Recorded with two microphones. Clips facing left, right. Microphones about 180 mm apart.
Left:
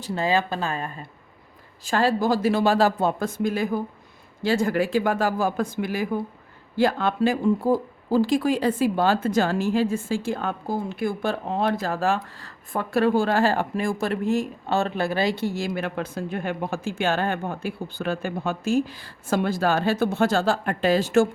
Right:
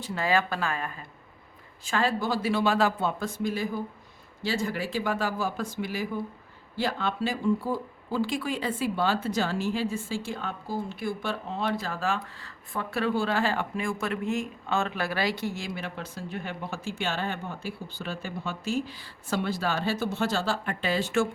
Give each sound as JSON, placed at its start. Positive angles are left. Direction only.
{"t": 0.0, "sound": "speech", "side_deg": 25}
{"t": 1.8, "sound": "speech", "side_deg": 35}